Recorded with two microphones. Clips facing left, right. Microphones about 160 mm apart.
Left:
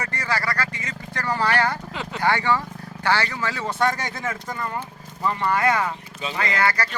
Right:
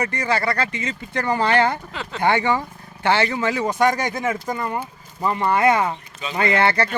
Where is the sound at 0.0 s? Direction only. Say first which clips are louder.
Right 5 dB; 20° right (ahead or behind).